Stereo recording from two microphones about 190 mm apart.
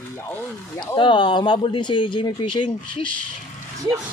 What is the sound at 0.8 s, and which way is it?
Speech, 25° left (ahead or behind).